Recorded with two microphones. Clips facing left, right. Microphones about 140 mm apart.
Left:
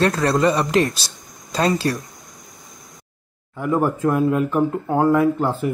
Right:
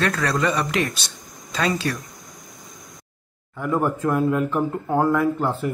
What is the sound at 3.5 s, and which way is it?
Speech, 5° left (ahead or behind).